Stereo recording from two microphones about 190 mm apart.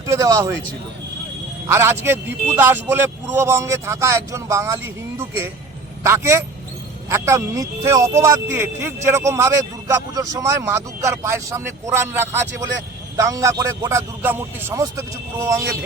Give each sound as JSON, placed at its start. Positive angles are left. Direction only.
{"t": 0.1, "sound": "a man's voice", "side_deg": -15}
{"t": 1.6, "sound": "a man's voice", "side_deg": -15}